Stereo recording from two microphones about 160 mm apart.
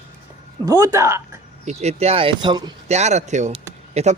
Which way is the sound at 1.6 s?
40° right (ahead or behind).